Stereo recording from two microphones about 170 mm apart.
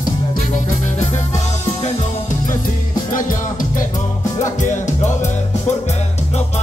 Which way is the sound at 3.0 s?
50° left (ahead or behind).